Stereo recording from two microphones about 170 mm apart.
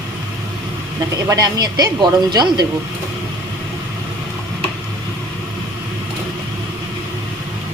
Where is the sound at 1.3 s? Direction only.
20° right (ahead or behind).